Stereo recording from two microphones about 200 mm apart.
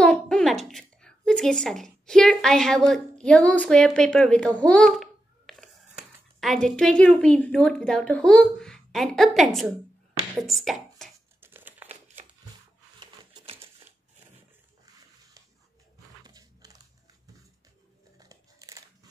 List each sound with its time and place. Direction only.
0.0 s a woman's voice: 5° left (ahead or behind)
11.4 s crumpling: 10° right (ahead or behind)
13.0 s a sound: 25° right (ahead or behind)
16.3 s biting: 20° right (ahead or behind)
18.1 s crumpling: 20° right (ahead or behind)